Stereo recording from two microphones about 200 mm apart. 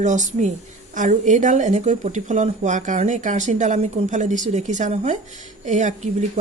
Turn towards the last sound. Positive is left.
turn(degrees=-35)  # may be behind; listen again after turning